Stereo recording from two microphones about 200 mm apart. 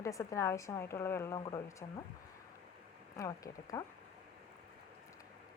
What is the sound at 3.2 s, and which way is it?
Speech, 15° left (ahead or behind).